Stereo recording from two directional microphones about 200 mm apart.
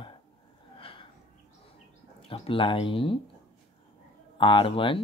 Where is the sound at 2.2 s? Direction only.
25° left (ahead or behind).